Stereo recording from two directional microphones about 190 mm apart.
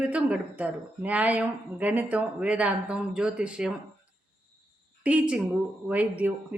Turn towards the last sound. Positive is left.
turn(degrees=-10)  # may be behind; listen again after turning